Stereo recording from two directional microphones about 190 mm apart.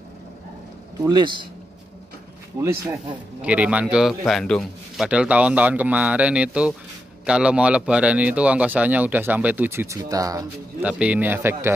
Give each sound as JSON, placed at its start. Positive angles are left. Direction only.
{"t": 1.0, "sound": "a man's voice", "side_deg": -25}
{"t": 2.6, "sound": "speech", "side_deg": -15}
{"t": 10.8, "sound": "speech", "side_deg": -5}